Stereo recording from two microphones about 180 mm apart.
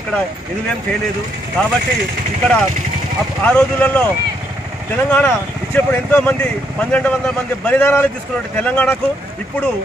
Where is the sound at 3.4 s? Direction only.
5° left (ahead or behind).